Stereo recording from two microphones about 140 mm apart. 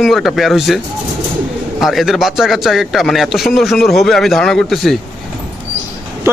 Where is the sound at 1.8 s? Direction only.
Centre (ahead or behind).